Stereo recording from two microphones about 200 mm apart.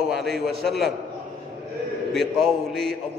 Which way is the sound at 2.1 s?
Centre (ahead or behind).